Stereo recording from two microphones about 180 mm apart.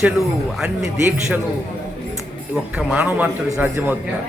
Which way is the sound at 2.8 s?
5° right (ahead or behind).